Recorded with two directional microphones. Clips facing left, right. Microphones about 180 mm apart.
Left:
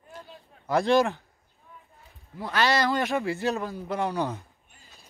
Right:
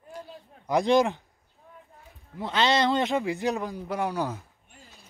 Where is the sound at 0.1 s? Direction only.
10° right (ahead or behind).